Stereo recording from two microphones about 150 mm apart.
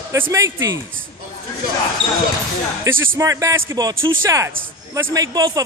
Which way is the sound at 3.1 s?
20° right (ahead or behind).